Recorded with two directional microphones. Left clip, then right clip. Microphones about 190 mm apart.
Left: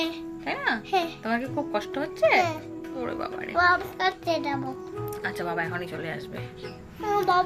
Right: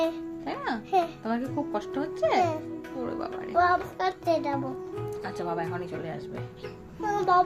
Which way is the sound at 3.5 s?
55° right (ahead or behind).